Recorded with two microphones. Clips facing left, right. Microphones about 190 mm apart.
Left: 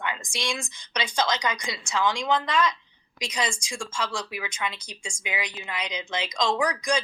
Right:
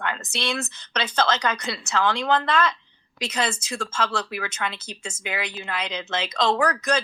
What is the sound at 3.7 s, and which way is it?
Speech, 65° right (ahead or behind).